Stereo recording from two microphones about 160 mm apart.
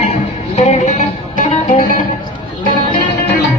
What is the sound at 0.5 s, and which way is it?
Music, 45° left (ahead or behind).